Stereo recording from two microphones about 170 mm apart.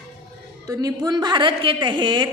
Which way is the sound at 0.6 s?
20° right (ahead or behind).